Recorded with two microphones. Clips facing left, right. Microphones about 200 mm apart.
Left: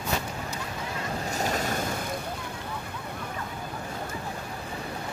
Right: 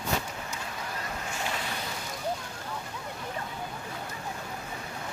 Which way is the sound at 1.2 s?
40° left (ahead or behind).